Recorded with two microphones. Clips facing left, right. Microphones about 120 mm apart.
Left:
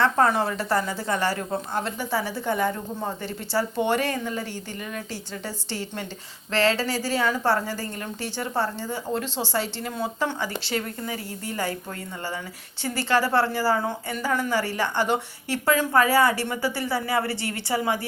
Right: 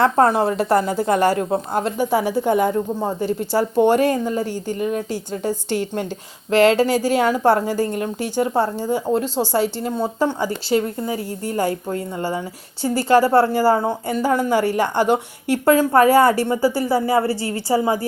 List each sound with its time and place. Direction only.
0.0 s a woman's voice: 40° right (ahead or behind)
11.4 s a woman's voice: 45° right (ahead or behind)
12.8 s a woman's voice: 40° right (ahead or behind)